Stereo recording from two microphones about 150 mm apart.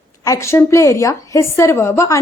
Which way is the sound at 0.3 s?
20° left (ahead or behind).